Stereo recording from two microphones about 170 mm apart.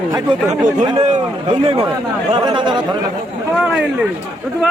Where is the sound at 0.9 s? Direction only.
45° right (ahead or behind).